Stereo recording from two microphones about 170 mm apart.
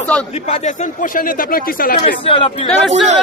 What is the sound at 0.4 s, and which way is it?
Speech, 45° left (ahead or behind).